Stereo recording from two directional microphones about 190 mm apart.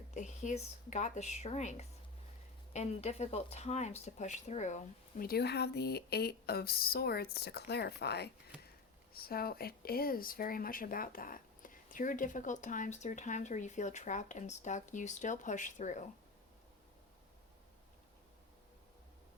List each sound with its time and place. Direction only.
0.1 s speech: 40° left (ahead or behind)